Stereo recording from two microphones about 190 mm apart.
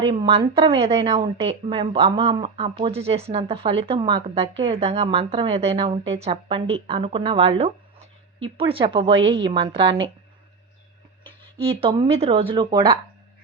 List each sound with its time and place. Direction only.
0.0 s speech: 25° right (ahead or behind)
11.6 s speech: 30° right (ahead or behind)